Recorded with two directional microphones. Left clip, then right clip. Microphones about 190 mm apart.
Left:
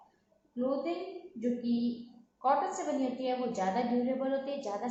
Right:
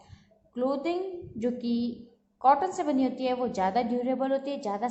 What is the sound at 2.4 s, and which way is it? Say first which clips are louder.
A woman's voice: right 6 dB; 35° right (ahead or behind).